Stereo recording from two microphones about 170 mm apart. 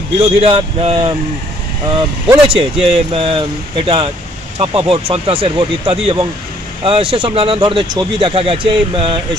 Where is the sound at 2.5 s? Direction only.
35° right (ahead or behind).